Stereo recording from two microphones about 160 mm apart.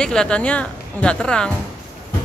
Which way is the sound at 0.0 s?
5° left (ahead or behind).